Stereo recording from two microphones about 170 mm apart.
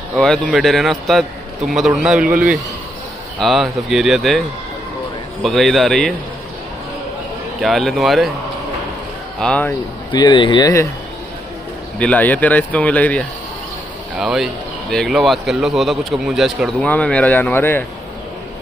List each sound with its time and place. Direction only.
0.1 s speech: centre (ahead or behind)
7.6 s speech: centre (ahead or behind)
9.4 s speech: 5° left (ahead or behind)
10.1 s speech: 25° left (ahead or behind)
12.0 s speech: 10° left (ahead or behind)
14.1 s speech: 5° right (ahead or behind)